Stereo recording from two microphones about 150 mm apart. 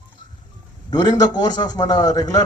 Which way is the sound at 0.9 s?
30° left (ahead or behind).